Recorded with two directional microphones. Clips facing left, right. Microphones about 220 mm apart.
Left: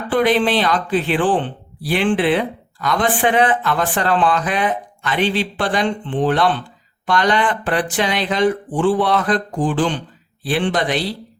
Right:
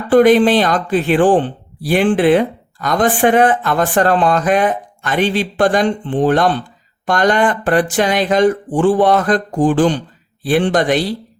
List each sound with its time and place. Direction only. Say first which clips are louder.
0.1 s speech: right 7 dB; 45° right (ahead or behind)